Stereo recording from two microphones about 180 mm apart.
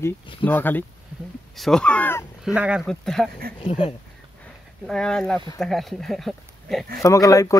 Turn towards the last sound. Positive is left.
turn(degrees=20)  # may be behind; listen again after turning